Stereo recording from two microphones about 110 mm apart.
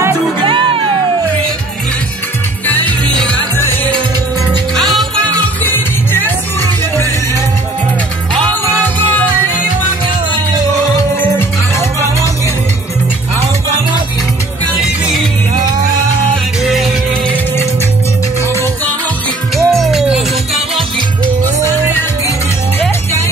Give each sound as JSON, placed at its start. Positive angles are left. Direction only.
{"t": 0.4, "sound": "music", "side_deg": -50}
{"t": 2.6, "sound": "music", "side_deg": 15}
{"t": 4.7, "sound": "music", "side_deg": 5}
{"t": 5.6, "sound": "music", "side_deg": 15}
{"t": 16.6, "sound": "music", "side_deg": 0}
{"t": 19.5, "sound": "music", "side_deg": 0}
{"t": 21.6, "sound": "music", "side_deg": 20}